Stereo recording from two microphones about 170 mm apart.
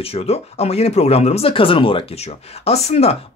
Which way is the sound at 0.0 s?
35° left (ahead or behind).